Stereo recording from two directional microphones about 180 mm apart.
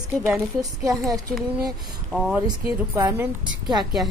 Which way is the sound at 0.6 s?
20° right (ahead or behind).